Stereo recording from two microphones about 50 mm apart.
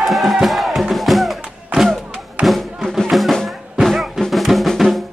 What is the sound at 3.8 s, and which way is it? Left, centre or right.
Music, centre.